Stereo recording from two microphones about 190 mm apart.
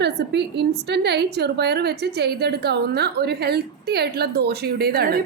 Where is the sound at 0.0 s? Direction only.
65° right (ahead or behind).